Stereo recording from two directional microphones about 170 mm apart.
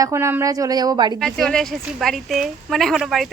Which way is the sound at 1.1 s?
Centre (ahead or behind).